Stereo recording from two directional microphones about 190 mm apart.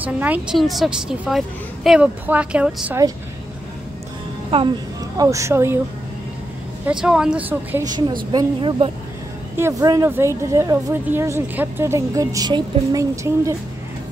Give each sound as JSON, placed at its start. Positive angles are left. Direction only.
{"t": 0.0, "sound": "a woman's voice", "side_deg": -10}
{"t": 4.5, "sound": "a woman's voice", "side_deg": -30}
{"t": 5.1, "sound": "a woman's voice", "side_deg": -20}
{"t": 6.9, "sound": "a woman's voice", "side_deg": -5}
{"t": 7.8, "sound": "a woman's voice", "side_deg": -20}
{"t": 9.6, "sound": "a woman's voice", "side_deg": -15}